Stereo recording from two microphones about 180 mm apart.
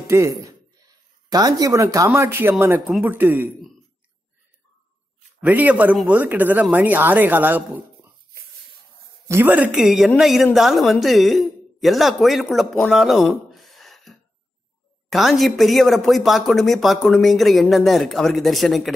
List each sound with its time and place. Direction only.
0.1 s a man's voice: 15° right (ahead or behind)
5.4 s a man's voice: 10° right (ahead or behind)
9.3 s speech: 10° right (ahead or behind)
13.5 s a sound: centre (ahead or behind)
15.0 s speech: centre (ahead or behind)